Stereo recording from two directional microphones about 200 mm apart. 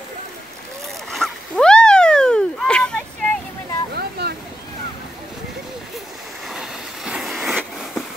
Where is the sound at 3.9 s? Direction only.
55° right (ahead or behind).